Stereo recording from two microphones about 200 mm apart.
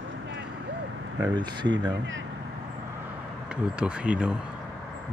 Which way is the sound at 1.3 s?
20° right (ahead or behind).